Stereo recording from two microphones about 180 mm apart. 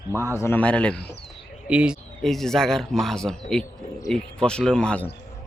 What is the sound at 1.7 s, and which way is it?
A man's voice, 5° right (ahead or behind).